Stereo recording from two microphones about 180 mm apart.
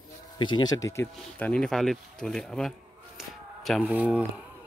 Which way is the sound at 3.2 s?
Centre (ahead or behind).